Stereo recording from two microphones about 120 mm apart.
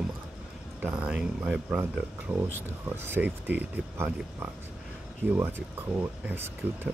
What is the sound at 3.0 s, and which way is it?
Speech, 15° right (ahead or behind).